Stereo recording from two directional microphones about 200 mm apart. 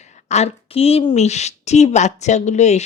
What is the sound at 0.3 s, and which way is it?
Speech, 35° left (ahead or behind).